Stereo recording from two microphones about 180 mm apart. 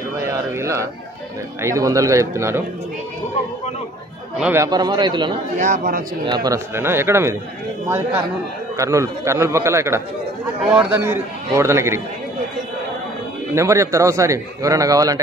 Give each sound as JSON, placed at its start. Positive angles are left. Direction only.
{"t": 0.2, "sound": "a sound", "side_deg": -15}
{"t": 1.6, "sound": "a man's voice", "side_deg": -15}
{"t": 4.4, "sound": "a man's voice", "side_deg": -10}
{"t": 4.6, "sound": "a man's voice", "side_deg": -20}
{"t": 5.6, "sound": "speech", "side_deg": -50}
{"t": 6.2, "sound": "a man's voice", "side_deg": -20}
{"t": 8.7, "sound": "a man's voice", "side_deg": -15}
{"t": 13.6, "sound": "a man's voice", "side_deg": -15}